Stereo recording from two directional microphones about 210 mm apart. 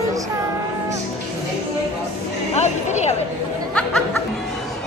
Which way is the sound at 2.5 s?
30° left (ahead or behind).